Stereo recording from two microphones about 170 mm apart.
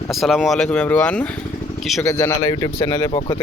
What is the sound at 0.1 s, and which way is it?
Speech, centre (ahead or behind).